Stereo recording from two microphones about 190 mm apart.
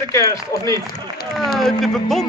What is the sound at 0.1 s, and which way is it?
Speech, 15° left (ahead or behind).